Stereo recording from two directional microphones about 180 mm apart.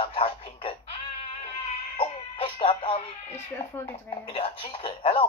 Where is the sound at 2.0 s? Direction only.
35° left (ahead or behind).